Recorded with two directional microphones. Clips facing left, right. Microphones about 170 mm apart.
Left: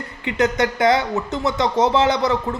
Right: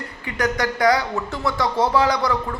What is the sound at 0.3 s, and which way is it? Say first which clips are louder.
Speech: left 4 dB; 20° left (ahead or behind).